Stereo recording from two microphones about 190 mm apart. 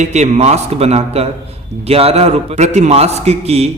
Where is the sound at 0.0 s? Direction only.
35° right (ahead or behind).